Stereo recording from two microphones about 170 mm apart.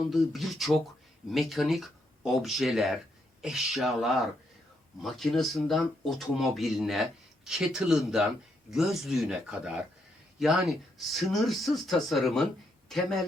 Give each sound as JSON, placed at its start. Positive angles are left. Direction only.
{"t": 0.0, "sound": "speech", "side_deg": 0}